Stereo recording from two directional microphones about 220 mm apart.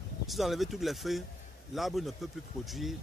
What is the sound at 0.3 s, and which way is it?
Speech, centre (ahead or behind).